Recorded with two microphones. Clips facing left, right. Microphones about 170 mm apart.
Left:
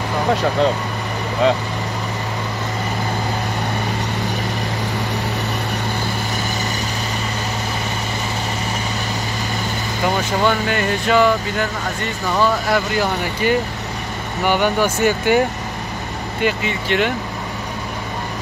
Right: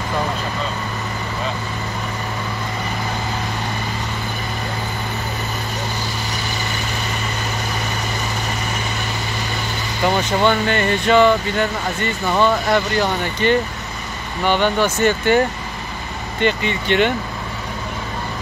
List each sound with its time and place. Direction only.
0.3 s speech: 75° left (ahead or behind)
10.0 s speech: 5° left (ahead or behind)